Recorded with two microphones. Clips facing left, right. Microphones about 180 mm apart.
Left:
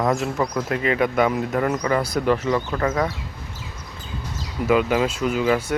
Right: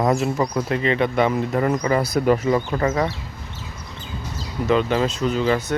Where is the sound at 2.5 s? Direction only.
15° right (ahead or behind).